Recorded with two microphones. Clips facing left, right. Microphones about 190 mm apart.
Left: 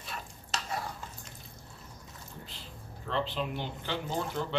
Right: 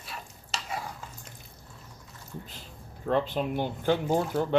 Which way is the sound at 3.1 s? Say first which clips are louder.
Right 6 dB; 50° right (ahead or behind).